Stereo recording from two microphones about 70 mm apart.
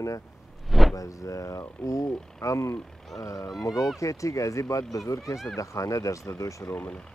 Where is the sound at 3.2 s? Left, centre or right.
Left.